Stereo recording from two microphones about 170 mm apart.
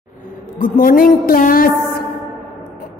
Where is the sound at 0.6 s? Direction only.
55° left (ahead or behind).